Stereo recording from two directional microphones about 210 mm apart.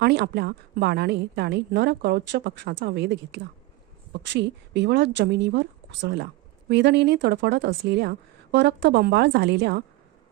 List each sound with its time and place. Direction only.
0.0 s a woman's voice: 50° right (ahead or behind)